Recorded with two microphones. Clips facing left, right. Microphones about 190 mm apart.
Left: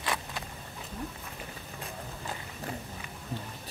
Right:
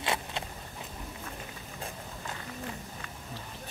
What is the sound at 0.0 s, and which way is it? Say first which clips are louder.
Vehicle: right 2 dB; 25° right (ahead or behind).